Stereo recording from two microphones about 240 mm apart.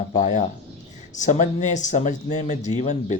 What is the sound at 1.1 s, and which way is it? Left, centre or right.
Speech, left.